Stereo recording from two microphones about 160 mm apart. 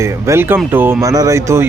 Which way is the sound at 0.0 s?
15° right (ahead or behind).